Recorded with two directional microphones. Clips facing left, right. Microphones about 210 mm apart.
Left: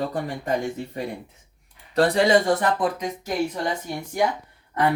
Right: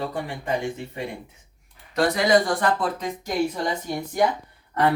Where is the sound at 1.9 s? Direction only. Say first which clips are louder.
Left 1 dB; 30° left (ahead or behind).